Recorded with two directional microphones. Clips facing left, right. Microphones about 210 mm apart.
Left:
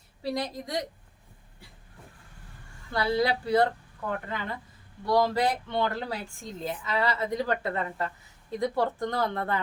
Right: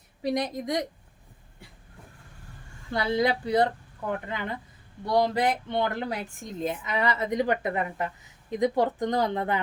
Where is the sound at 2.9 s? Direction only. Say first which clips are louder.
Right 1 dB; 20° right (ahead or behind).